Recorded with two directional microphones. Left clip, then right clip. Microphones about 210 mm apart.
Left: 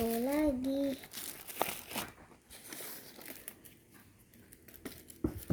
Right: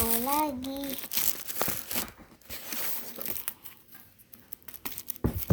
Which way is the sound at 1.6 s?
20° right (ahead or behind).